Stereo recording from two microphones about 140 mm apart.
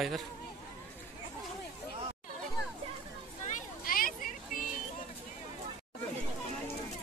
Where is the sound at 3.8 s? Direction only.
90° left.